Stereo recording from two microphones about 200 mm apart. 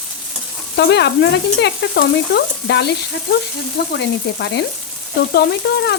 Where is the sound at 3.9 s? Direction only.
60° left (ahead or behind).